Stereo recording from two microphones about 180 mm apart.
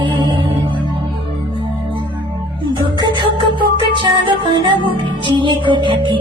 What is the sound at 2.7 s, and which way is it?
Music, 25° right (ahead or behind).